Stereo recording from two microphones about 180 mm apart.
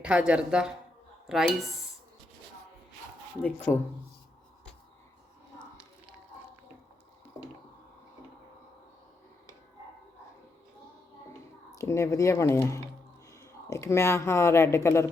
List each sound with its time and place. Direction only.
0.0 s speech: 5° right (ahead or behind)
3.7 s speech: 15° left (ahead or behind)
11.7 s speech: 15° left (ahead or behind)